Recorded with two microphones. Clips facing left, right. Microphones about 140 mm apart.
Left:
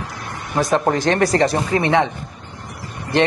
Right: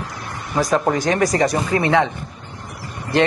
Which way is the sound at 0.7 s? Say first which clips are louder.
Left 1 dB; 25° left (ahead or behind).